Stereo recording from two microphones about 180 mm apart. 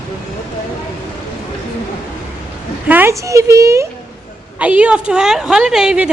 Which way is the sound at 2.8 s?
10° right (ahead or behind).